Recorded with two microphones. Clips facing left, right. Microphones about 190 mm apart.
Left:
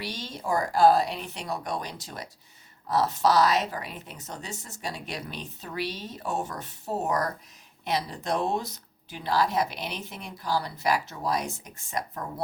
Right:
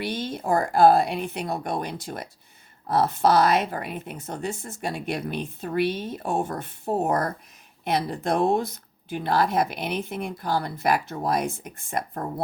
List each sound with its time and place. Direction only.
0.0 s speech: 55° right (ahead or behind)